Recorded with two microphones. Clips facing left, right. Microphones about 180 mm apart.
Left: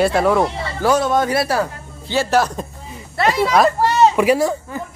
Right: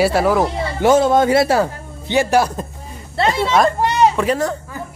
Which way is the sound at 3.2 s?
30° right (ahead or behind).